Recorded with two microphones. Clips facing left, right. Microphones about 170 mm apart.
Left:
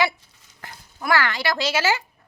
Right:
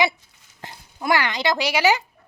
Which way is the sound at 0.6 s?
20° right (ahead or behind).